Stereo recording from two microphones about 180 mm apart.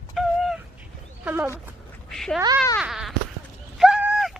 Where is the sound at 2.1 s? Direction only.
Centre (ahead or behind).